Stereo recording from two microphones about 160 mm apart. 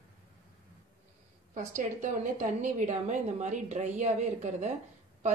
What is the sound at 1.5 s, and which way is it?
A man's voice, 55° right (ahead or behind).